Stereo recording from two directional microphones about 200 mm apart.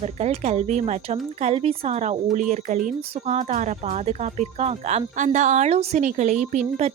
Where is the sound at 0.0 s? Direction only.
35° right (ahead or behind).